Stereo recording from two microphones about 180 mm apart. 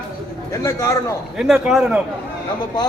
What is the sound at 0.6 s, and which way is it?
Speech, 15° left (ahead or behind).